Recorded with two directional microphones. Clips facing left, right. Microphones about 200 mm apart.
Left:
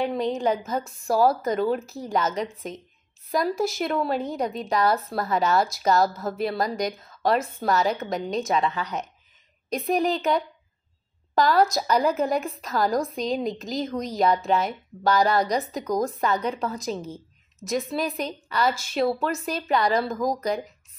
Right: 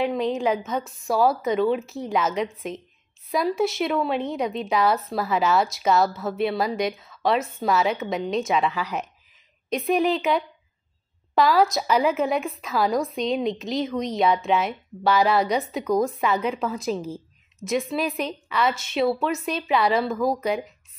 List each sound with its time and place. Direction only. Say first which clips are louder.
0.0 s a woman's voice: right 1 dB; centre (ahead or behind)
16.8 s a woman's voice: right 3 dB; 30° right (ahead or behind)
17.9 s a woman's voice: right 1 dB; centre (ahead or behind)